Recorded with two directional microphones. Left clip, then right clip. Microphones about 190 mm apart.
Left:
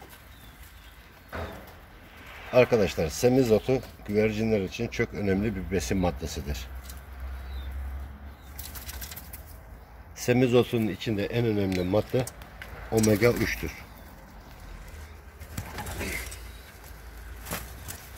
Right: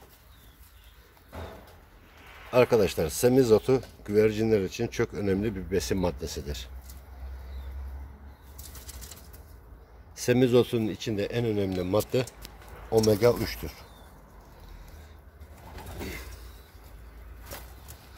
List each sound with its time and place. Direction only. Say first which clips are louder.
2.5 s speech: even; 20° right (ahead or behind)
10.1 s speech: even; 20° right (ahead or behind)